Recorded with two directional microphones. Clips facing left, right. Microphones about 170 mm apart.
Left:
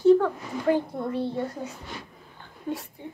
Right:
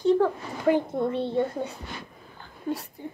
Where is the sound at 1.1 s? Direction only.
25° right (ahead or behind).